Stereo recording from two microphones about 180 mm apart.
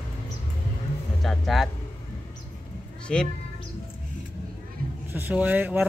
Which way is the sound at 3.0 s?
5° left (ahead or behind).